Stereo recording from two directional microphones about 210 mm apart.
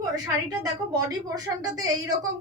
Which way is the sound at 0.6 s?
15° right (ahead or behind).